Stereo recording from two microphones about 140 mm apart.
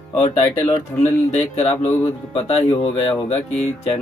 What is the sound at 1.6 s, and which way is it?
Speech, 50° left (ahead or behind).